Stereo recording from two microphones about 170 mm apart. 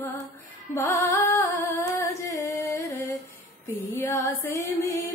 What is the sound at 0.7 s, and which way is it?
Music, 15° left (ahead or behind).